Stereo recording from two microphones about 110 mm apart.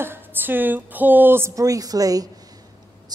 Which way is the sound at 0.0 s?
20° right (ahead or behind).